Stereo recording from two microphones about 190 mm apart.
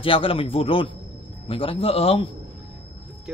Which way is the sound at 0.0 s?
30° left (ahead or behind).